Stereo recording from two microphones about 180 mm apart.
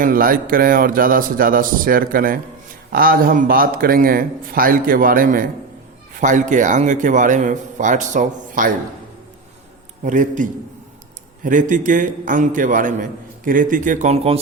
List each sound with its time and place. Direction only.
0.0 s a man's voice: 50° right (ahead or behind)
10.0 s a man's voice: 45° right (ahead or behind)